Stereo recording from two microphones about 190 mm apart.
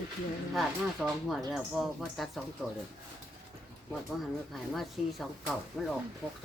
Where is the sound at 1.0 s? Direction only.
Centre (ahead or behind).